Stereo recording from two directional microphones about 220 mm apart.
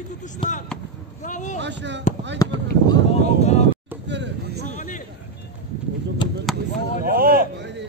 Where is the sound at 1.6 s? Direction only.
55° right (ahead or behind).